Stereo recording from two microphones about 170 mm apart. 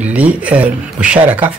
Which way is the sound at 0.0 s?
10° right (ahead or behind).